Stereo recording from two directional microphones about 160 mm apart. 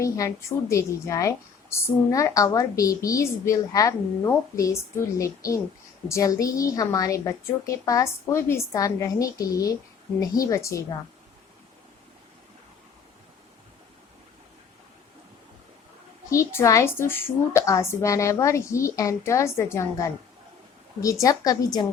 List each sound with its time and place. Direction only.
0.0 s a woman's voice: 20° left (ahead or behind)
16.3 s a woman's voice: 15° left (ahead or behind)